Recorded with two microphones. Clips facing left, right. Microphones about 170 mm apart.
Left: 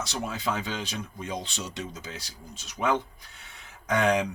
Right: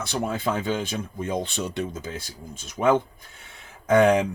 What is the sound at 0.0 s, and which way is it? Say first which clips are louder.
Speech: right 5 dB; 55° right (ahead or behind).